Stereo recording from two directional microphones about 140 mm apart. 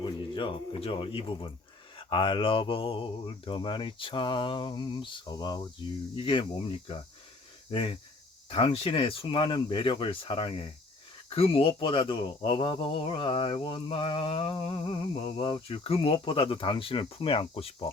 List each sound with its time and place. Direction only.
0.0 s speech: 35° left (ahead or behind)